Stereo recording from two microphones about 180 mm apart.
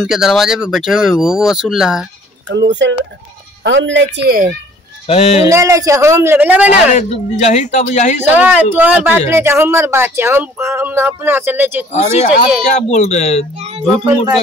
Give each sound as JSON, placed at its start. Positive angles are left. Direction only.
{"t": 0.0, "sound": "speech", "side_deg": -5}
{"t": 2.5, "sound": "speech", "side_deg": -80}
{"t": 3.6, "sound": "speech", "side_deg": -90}
{"t": 4.3, "sound": "speech", "side_deg": -55}
{"t": 5.0, "sound": "speech", "side_deg": 35}
{"t": 5.5, "sound": "speech", "side_deg": -15}
{"t": 6.7, "sound": "speech", "side_deg": 40}
{"t": 8.2, "sound": "speech", "side_deg": -10}
{"t": 11.9, "sound": "speech", "side_deg": 40}